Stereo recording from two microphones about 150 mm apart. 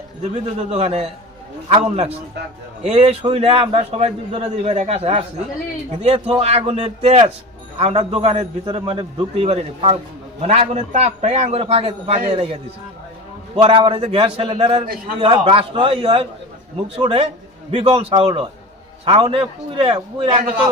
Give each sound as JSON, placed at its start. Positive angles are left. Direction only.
{"t": 0.7, "sound": "a man's voice", "side_deg": -45}
{"t": 13.6, "sound": "a man's voice", "side_deg": -35}